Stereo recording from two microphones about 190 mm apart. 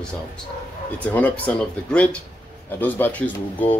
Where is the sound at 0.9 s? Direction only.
10° left (ahead or behind).